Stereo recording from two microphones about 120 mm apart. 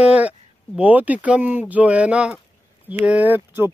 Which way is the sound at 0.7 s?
15° right (ahead or behind).